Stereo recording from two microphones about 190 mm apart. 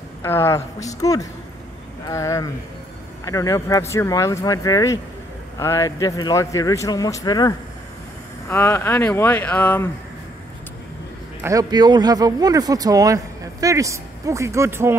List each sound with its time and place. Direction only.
0.2 s a man's voice: 15° left (ahead or behind)
11.4 s a man's voice: 20° right (ahead or behind)